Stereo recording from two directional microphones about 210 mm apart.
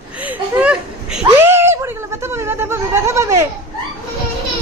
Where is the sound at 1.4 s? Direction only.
10° right (ahead or behind).